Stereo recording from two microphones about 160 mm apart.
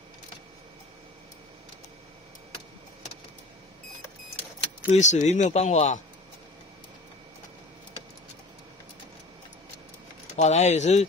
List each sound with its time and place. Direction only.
4.8 s a man's voice: 45° left (ahead or behind)
10.3 s a man's voice: 45° left (ahead or behind)